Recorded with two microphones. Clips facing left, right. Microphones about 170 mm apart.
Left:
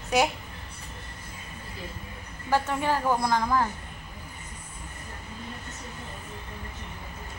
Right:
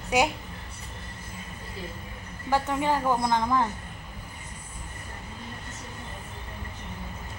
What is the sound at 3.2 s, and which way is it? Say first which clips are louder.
Speech: even; 20° right (ahead or behind).